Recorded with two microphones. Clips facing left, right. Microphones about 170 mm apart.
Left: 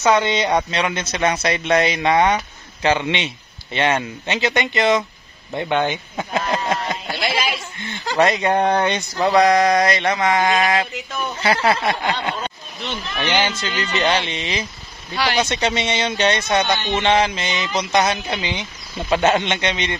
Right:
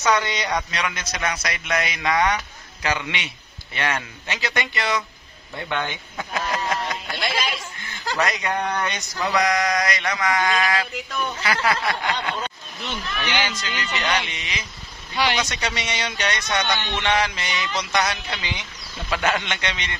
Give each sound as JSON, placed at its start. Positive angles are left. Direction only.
{"t": 0.0, "sound": "speech", "side_deg": 25}
{"t": 7.2, "sound": "a sound", "side_deg": 5}
{"t": 8.2, "sound": "speech", "side_deg": 30}